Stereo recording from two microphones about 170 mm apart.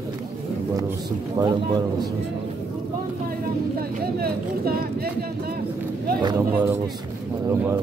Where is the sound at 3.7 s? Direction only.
65° right (ahead or behind).